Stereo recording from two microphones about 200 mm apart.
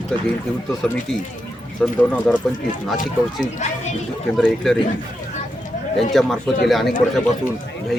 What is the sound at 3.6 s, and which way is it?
Speech, 35° left (ahead or behind).